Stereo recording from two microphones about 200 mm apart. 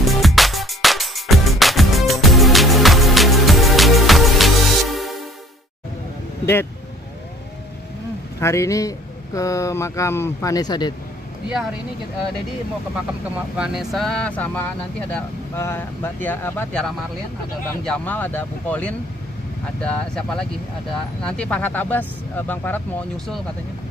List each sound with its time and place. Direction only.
0.0 s music: centre (ahead or behind)
6.4 s speech: 10° left (ahead or behind)
8.4 s speech: 15° left (ahead or behind)
13.6 s speech: 5° right (ahead or behind)